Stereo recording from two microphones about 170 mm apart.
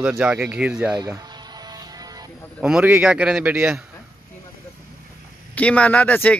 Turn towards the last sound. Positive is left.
turn(degrees=10)  # may be behind; listen again after turning